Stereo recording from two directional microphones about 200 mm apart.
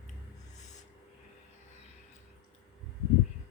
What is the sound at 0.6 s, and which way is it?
Music, 35° left (ahead or behind).